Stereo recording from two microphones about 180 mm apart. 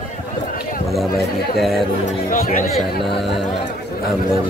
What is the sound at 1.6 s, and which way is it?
Speech, centre (ahead or behind).